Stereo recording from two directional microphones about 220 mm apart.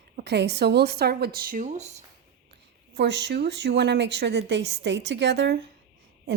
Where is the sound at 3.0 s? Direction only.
50° right (ahead or behind).